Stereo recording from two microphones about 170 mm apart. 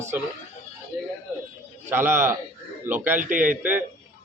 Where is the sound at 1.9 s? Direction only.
15° right (ahead or behind).